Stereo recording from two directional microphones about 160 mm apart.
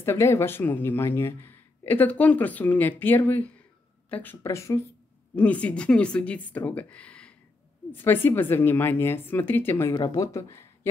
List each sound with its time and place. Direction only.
0.0 s speech: 15° left (ahead or behind)